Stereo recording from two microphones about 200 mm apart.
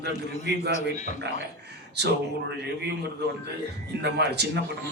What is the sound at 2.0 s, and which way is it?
Speech, 55° right (ahead or behind).